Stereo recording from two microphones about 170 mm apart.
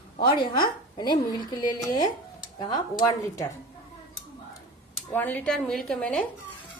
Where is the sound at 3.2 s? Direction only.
20° left (ahead or behind).